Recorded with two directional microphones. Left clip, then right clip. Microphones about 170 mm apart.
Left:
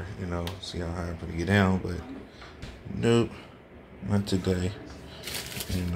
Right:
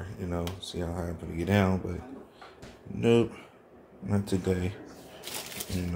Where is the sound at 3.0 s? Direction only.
10° right (ahead or behind).